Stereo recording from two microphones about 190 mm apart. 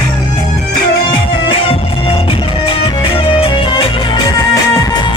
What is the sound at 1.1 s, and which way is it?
Music, 25° left (ahead or behind).